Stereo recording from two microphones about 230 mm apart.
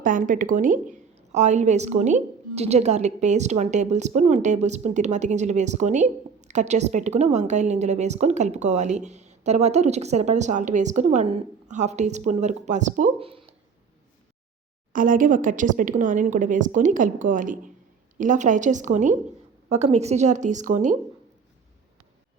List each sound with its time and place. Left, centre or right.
0.0 s a woman's voice: right
14.9 s a woman's voice: right